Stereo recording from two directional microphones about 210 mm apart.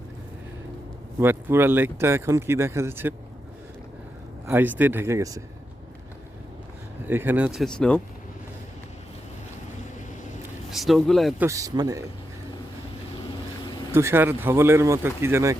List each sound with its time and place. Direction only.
1.2 s speech: 10° right (ahead or behind)
4.4 s speech: 10° right (ahead or behind)
7.1 s speech: 10° right (ahead or behind)
10.7 s speech: centre (ahead or behind)
11.4 s speech: 15° right (ahead or behind)
13.9 s speech: 10° right (ahead or behind)